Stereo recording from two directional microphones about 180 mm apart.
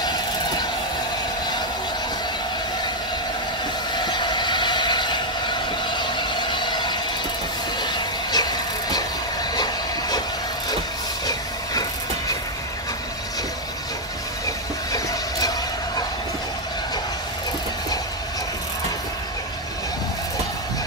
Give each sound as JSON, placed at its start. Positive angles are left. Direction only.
{"t": 0.0, "sound": "train", "side_deg": 25}
{"t": 3.9, "sound": "train", "side_deg": 25}
{"t": 7.8, "sound": "vehicle", "side_deg": 25}
{"t": 9.6, "sound": "train", "side_deg": 20}
{"t": 14.9, "sound": "a sound", "side_deg": 20}